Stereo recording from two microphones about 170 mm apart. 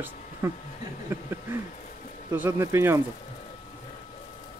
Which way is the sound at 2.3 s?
15° right (ahead or behind).